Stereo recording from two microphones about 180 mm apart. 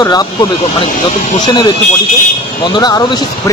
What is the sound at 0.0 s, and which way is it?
Speech, 20° left (ahead or behind).